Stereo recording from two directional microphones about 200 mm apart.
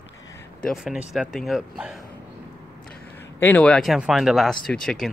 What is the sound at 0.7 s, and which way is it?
Speech, centre (ahead or behind).